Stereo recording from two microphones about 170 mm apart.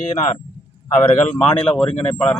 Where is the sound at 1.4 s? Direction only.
30° left (ahead or behind).